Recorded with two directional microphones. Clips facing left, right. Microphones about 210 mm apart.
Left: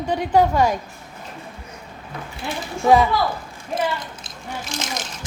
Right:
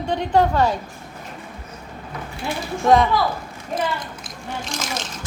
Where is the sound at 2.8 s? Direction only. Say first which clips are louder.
Even; 5° left (ahead or behind).